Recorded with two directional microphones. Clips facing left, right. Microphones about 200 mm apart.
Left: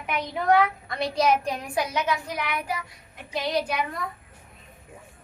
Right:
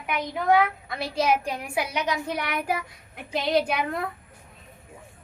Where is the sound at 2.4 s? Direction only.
45° right (ahead or behind).